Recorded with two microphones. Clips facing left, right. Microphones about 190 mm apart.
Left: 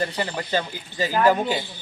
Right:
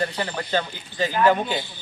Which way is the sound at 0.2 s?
10° left (ahead or behind).